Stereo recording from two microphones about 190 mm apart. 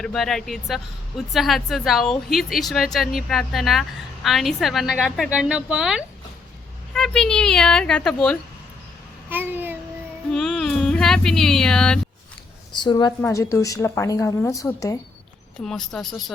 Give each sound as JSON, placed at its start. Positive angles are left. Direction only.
{"t": 0.0, "sound": "a woman's voice", "side_deg": 0}
{"t": 9.3, "sound": "a child's voice", "side_deg": -10}
{"t": 10.3, "sound": "speech", "side_deg": 0}
{"t": 12.8, "sound": "a woman's voice", "side_deg": 25}
{"t": 15.5, "sound": "a woman's voice", "side_deg": 0}